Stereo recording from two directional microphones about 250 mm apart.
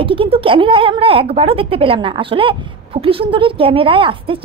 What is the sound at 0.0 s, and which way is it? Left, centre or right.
Speech, right.